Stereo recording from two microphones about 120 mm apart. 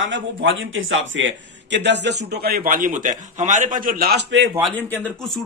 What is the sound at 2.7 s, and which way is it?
A man's voice, 90° right.